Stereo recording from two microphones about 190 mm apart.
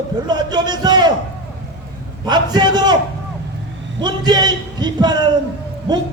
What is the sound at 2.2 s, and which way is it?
Speech, 20° right (ahead or behind).